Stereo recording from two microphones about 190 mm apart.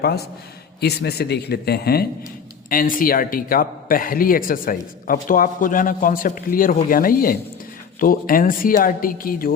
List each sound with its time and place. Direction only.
0.8 s speech: 60° left (ahead or behind)